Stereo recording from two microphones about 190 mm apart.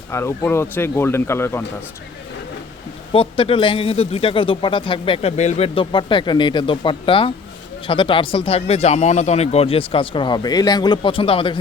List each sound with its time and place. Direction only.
0.1 s speech: 15° left (ahead or behind)
3.1 s a man's voice: 30° left (ahead or behind)